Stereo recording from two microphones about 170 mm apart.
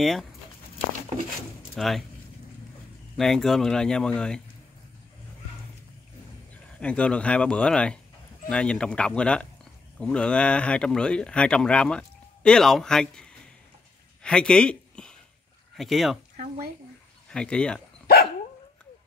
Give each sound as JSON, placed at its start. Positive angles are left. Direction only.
{"t": 0.0, "sound": "speech", "side_deg": 0}
{"t": 1.8, "sound": "speech", "side_deg": 0}
{"t": 3.2, "sound": "speech", "side_deg": 0}
{"t": 6.8, "sound": "speech", "side_deg": 5}
{"t": 14.2, "sound": "a sound", "side_deg": 5}
{"t": 15.7, "sound": "speech", "side_deg": 0}
{"t": 17.3, "sound": "speech", "side_deg": 5}
{"t": 18.0, "sound": "dog", "side_deg": 65}